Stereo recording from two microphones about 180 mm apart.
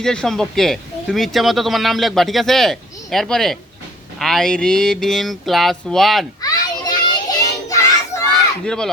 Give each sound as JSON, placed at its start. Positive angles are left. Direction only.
{"t": 0.0, "sound": "speech", "side_deg": 5}
{"t": 6.4, "sound": "child singing", "side_deg": 20}
{"t": 8.6, "sound": "speech", "side_deg": 5}